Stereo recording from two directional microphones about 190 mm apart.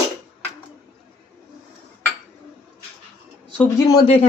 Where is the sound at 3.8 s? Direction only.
20° left (ahead or behind).